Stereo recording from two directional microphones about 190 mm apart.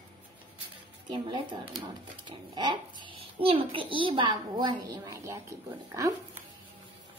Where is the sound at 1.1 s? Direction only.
25° right (ahead or behind).